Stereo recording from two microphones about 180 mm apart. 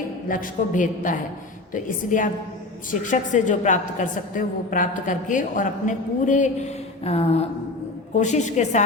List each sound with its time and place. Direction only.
0.3 s a woman's voice: 45° left (ahead or behind)